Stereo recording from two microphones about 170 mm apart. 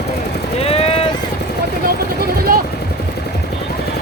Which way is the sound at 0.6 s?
35° left (ahead or behind).